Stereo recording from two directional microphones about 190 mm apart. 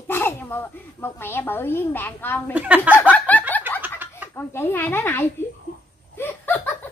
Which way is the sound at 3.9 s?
10° right (ahead or behind).